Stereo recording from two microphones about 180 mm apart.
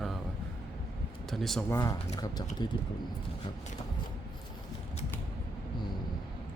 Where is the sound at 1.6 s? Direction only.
20° left (ahead or behind).